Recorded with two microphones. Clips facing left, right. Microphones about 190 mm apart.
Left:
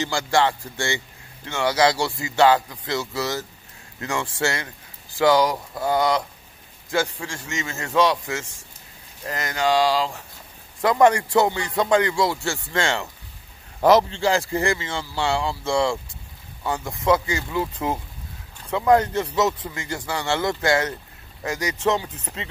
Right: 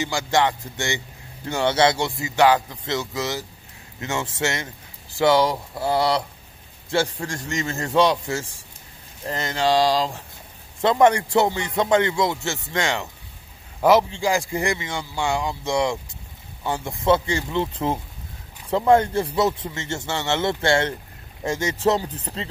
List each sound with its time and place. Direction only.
0.0 s a man's voice: 15° right (ahead or behind)
1.4 s speech: 35° right (ahead or behind)
1.7 s a man's voice: 25° right (ahead or behind)
10.8 s a man's voice: 25° right (ahead or behind)